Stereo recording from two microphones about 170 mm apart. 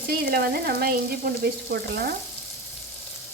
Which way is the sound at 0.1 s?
65° right (ahead or behind).